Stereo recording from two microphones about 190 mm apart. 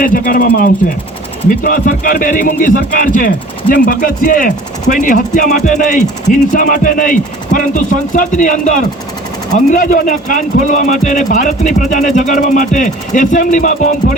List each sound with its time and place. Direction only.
0.0 s speech: 45° left (ahead or behind)